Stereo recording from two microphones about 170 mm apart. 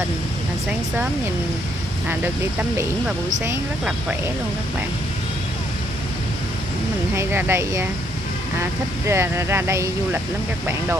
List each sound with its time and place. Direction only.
7.2 s speech: 15° right (ahead or behind)
9.0 s speech: 15° right (ahead or behind)